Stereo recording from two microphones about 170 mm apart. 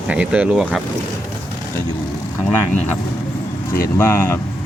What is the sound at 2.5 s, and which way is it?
Speech, 15° left (ahead or behind).